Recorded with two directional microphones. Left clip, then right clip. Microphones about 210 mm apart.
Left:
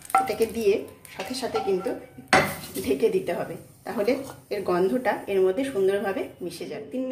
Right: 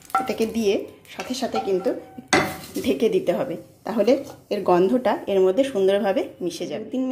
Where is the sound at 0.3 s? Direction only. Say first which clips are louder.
Right 1 dB; 40° right (ahead or behind).